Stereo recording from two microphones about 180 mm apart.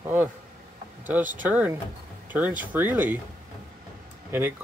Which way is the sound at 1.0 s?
10° right (ahead or behind).